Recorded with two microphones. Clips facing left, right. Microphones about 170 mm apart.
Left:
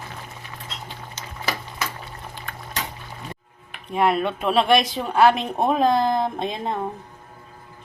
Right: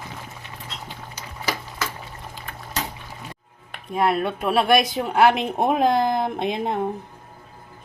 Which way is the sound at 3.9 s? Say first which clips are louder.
Left 1 dB; 5° right (ahead or behind).